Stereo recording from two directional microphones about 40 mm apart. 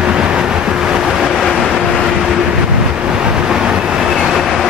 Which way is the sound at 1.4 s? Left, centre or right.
Centre.